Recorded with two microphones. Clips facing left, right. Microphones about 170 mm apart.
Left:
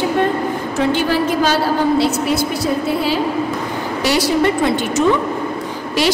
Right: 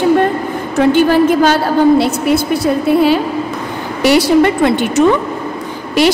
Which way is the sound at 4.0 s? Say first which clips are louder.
Right 7 dB; 60° right (ahead or behind).